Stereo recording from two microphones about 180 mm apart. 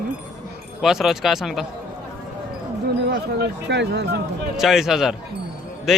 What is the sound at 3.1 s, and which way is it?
Speech, 70° right (ahead or behind).